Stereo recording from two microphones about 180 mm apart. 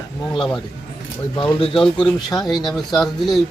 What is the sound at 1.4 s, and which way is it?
Speech, 30° left (ahead or behind).